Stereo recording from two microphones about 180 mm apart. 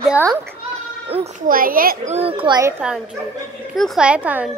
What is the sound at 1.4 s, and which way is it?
Speech, 50° right (ahead or behind).